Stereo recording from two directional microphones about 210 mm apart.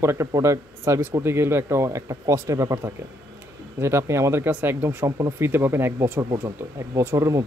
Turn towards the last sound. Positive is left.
turn(degrees=-15)  # may be behind; listen again after turning